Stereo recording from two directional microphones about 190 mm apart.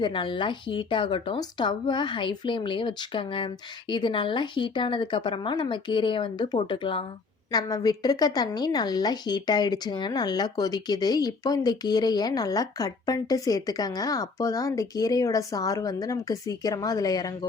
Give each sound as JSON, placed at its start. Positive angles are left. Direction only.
{"t": 0.0, "sound": "a woman's voice", "side_deg": 25}